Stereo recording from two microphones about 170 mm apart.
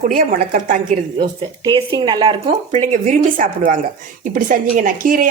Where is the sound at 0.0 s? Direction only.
55° right (ahead or behind).